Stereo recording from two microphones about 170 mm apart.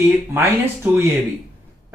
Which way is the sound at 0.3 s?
15° right (ahead or behind).